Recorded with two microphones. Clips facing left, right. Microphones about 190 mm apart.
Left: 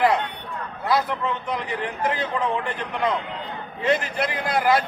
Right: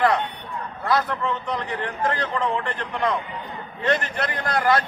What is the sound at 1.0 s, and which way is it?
Speech, 20° left (ahead or behind).